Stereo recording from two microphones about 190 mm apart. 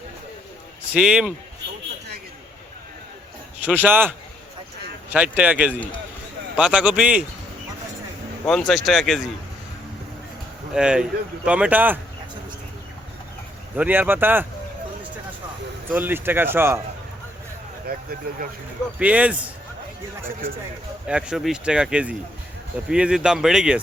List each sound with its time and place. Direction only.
0.9 s speech: 5° right (ahead or behind)
3.6 s speech: 10° right (ahead or behind)
8.4 s speech: centre (ahead or behind)
10.8 s speech: 5° right (ahead or behind)
13.7 s speech: 10° right (ahead or behind)
15.9 s speech: 10° right (ahead or behind)
17.9 s speech: 50° right (ahead or behind)
18.9 s speech: 5° right (ahead or behind)
21.1 s speech: 5° right (ahead or behind)